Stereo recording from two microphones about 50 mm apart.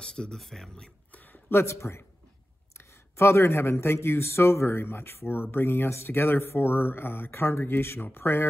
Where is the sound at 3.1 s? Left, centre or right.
Left.